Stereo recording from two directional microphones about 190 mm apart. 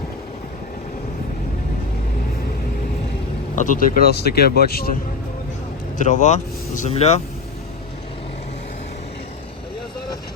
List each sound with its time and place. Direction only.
3.5 s speech: 40° left (ahead or behind)
6.0 s speech: 40° left (ahead or behind)